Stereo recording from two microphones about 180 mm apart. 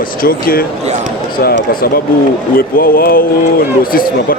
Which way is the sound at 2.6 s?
50° left (ahead or behind).